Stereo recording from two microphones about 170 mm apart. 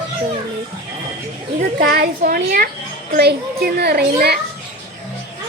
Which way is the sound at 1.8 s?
60° right (ahead or behind).